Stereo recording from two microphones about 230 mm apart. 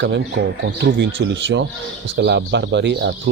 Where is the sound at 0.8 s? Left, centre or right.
Right.